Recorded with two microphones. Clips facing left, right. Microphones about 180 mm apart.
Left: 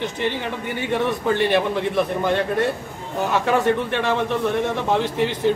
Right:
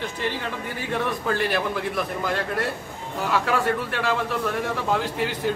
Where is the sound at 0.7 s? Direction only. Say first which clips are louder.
Left 5 dB; 20° left (ahead or behind).